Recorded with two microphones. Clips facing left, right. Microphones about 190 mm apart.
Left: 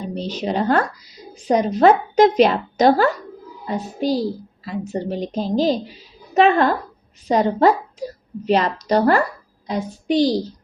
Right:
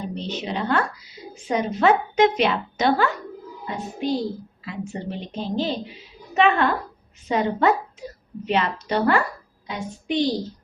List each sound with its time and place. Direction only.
0.1 s a woman's voice: 40° left (ahead or behind)